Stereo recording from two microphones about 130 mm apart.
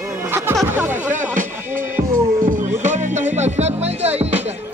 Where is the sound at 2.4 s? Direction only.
80° right; by 3.9 s 55° right (ahead or behind).